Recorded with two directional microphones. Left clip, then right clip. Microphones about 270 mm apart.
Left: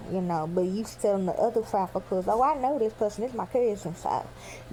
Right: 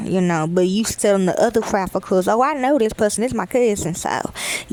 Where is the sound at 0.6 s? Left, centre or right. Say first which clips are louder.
Right 9 dB; right.